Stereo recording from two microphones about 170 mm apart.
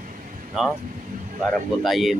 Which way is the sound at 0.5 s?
Centre (ahead or behind).